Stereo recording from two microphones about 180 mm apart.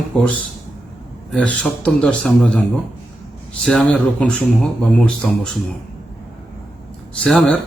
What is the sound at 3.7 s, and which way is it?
A man's voice, 5° left (ahead or behind).